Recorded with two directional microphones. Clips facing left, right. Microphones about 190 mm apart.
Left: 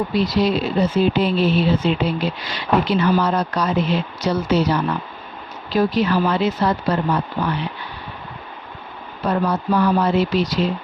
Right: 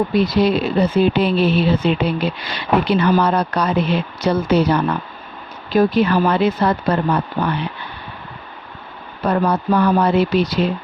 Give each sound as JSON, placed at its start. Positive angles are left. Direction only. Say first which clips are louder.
{"t": 0.1, "sound": "speech", "louder": "right 3 dB", "side_deg": -55}
{"t": 9.2, "sound": "speech", "louder": "right 3 dB", "side_deg": -60}